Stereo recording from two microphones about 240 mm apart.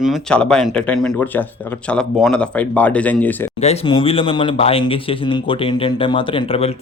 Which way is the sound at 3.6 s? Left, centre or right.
Left.